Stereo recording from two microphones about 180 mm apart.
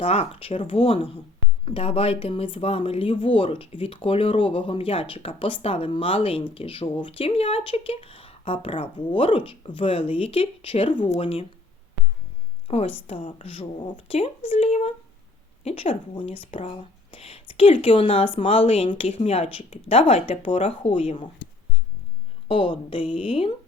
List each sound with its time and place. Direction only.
0.0 s speech: 35° left (ahead or behind)
12.6 s a woman's voice: 30° left (ahead or behind)
22.4 s a woman's voice: 30° left (ahead or behind)